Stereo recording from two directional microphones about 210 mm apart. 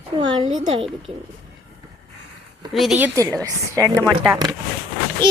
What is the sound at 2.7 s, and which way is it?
A child's voice, centre (ahead or behind).